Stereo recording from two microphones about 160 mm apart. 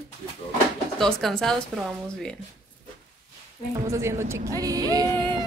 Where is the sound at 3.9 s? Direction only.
15° right (ahead or behind).